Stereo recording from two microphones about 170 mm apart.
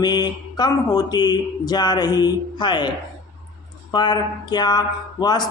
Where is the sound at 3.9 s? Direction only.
25° left (ahead or behind).